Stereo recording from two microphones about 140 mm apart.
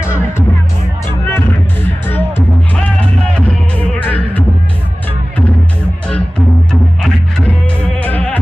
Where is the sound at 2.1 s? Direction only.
15° left (ahead or behind).